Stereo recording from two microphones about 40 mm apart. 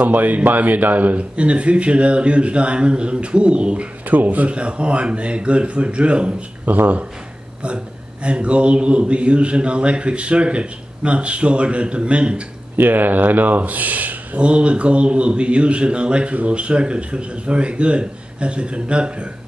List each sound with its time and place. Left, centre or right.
0.0 s speech: right
1.3 s speech: right
4.1 s speech: right
4.5 s speech: right
6.6 s speech: right
7.6 s speech: right
12.7 s speech: right
14.4 s speech: right